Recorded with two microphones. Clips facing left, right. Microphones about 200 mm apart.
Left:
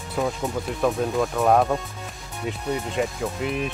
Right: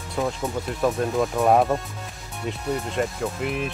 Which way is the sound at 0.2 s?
Centre (ahead or behind).